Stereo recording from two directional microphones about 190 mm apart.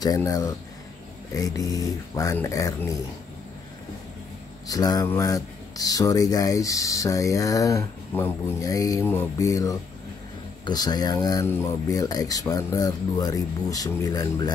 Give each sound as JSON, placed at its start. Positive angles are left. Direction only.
{"t": 0.0, "sound": "speech", "side_deg": 20}
{"t": 4.6, "sound": "speech", "side_deg": 20}